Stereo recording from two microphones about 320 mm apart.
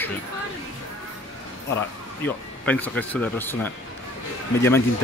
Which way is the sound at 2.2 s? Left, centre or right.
Centre.